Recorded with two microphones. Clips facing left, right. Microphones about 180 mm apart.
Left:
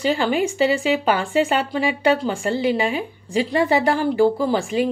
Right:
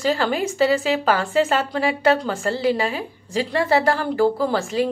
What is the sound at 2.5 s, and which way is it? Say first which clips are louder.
A woman's voice: even; 35° right (ahead or behind).